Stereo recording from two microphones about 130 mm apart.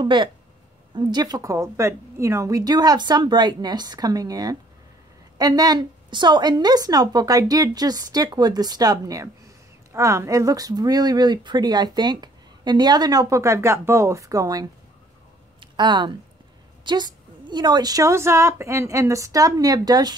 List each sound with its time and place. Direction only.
0.0 s a woman's voice: 35° right (ahead or behind)